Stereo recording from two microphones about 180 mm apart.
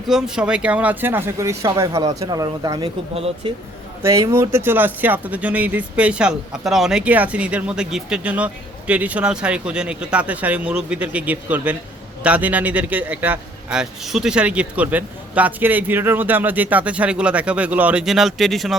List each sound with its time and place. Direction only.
0.1 s speech: 5° right (ahead or behind); by 3.5 s 30° right (ahead or behind)
4.0 s speech: 15° right (ahead or behind); by 18.8 s centre (ahead or behind)